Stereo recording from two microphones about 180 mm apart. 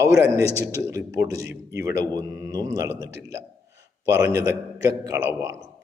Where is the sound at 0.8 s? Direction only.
15° right (ahead or behind).